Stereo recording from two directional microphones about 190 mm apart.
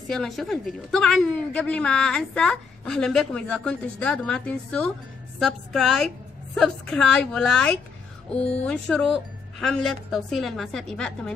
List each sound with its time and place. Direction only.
0.1 s a woman's voice: centre (ahead or behind)